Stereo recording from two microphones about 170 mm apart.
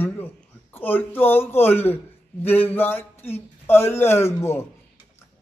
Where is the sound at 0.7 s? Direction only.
10° left (ahead or behind).